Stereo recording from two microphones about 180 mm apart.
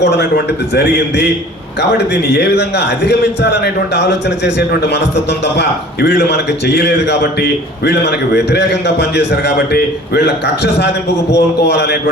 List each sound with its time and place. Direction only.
0.0 s a man's voice: 70° left (ahead or behind)
2.3 s a man's voice: 65° left (ahead or behind)